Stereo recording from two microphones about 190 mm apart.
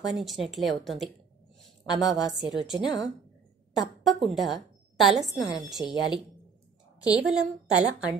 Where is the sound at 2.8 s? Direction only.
20° left (ahead or behind).